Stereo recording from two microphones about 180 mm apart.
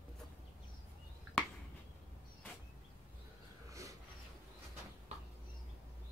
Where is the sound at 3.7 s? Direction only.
20° right (ahead or behind).